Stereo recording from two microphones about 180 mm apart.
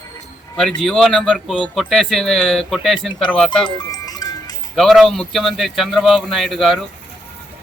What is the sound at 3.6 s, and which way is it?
Music, 20° left (ahead or behind).